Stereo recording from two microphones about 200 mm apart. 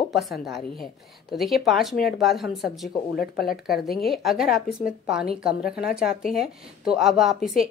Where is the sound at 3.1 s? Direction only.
50° left (ahead or behind).